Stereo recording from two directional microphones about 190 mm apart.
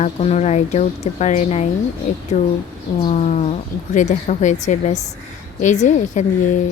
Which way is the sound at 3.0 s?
35° left (ahead or behind).